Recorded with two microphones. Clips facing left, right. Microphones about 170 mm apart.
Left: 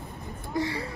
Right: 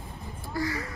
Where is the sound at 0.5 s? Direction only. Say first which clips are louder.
Left 2 dB; 30° left (ahead or behind).